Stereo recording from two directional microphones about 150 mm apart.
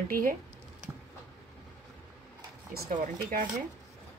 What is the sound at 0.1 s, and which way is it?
Computer keyboard, 65° right (ahead or behind).